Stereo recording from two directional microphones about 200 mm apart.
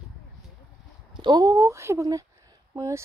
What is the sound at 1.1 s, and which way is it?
Speech, 20° right (ahead or behind).